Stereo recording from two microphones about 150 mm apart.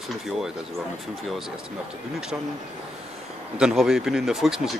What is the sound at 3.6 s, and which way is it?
Speech, 5° right (ahead or behind).